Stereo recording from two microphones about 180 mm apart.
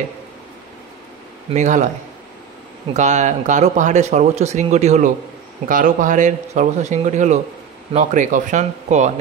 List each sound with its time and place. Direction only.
1.5 s a man's voice: 45° right (ahead or behind)
2.9 s a man's voice: 40° right (ahead or behind)